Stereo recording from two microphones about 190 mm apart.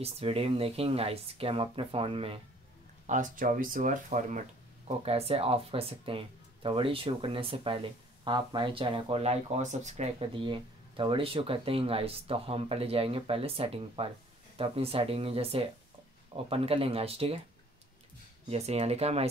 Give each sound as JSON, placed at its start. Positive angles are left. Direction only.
{"t": 0.0, "sound": "speech", "side_deg": -30}
{"t": 3.1, "sound": "speech", "side_deg": -45}
{"t": 4.8, "sound": "speech", "side_deg": -30}
{"t": 18.5, "sound": "speech", "side_deg": -35}